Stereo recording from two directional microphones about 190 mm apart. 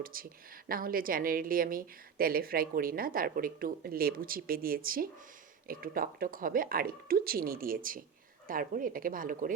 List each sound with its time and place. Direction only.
0.0 s a woman's voice: 50° right (ahead or behind)